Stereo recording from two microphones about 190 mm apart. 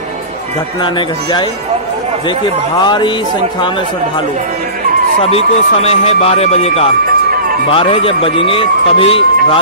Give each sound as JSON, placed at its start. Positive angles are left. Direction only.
{"t": 0.8, "sound": "speech", "side_deg": 25}
{"t": 5.2, "sound": "speech", "side_deg": 30}